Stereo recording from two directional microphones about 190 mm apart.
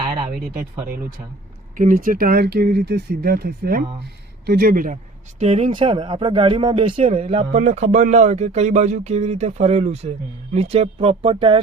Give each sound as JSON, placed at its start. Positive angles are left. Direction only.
{"t": 0.0, "sound": "a sound", "side_deg": -25}
{"t": 1.7, "sound": "speech", "side_deg": -45}
{"t": 5.4, "sound": "speech", "side_deg": -35}